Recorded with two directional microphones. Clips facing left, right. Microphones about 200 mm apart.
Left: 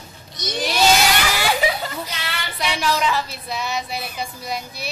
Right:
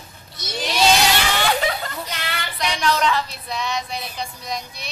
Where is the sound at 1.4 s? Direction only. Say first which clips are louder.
Left 1 dB; 5° left (ahead or behind).